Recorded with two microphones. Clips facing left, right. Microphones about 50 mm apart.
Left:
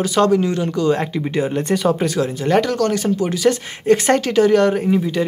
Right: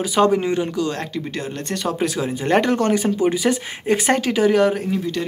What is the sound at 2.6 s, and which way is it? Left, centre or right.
Speech, right.